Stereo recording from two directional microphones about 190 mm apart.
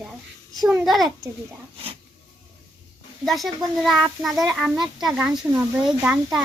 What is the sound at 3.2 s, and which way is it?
A child's voice, centre (ahead or behind).